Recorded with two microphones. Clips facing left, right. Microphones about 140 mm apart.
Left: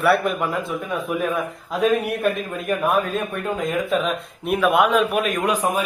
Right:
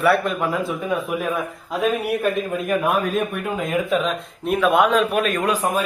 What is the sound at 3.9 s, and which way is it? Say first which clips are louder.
A man's voice: even; centre (ahead or behind).